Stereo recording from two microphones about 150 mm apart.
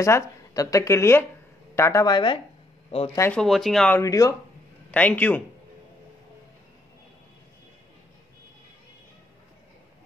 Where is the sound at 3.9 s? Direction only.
20° left (ahead or behind).